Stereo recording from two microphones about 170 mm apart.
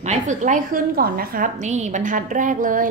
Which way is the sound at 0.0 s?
45° right (ahead or behind).